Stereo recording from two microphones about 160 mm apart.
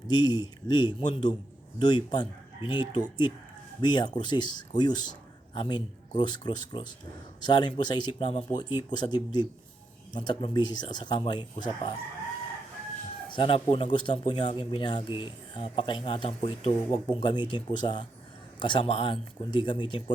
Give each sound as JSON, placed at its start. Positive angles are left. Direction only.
{"t": 0.1, "sound": "speech", "side_deg": 25}
{"t": 13.2, "sound": "speech", "side_deg": 30}